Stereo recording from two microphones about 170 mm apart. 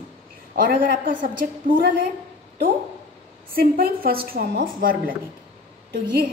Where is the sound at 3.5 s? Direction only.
60° right (ahead or behind).